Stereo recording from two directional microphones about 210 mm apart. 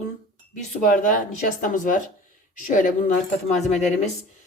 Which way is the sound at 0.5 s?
35° left (ahead or behind).